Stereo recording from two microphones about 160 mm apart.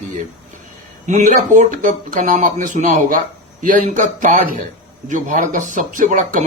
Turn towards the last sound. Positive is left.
turn(degrees=-50)  # may be behind; listen again after turning